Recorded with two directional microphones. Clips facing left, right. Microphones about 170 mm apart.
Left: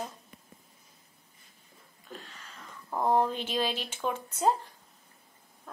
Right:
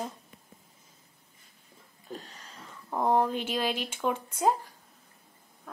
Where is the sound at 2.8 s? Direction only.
10° right (ahead or behind).